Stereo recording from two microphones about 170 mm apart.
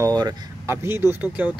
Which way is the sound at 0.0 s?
25° right (ahead or behind).